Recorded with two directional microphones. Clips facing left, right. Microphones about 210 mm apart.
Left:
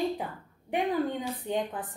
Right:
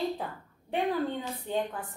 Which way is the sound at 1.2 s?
20° left (ahead or behind).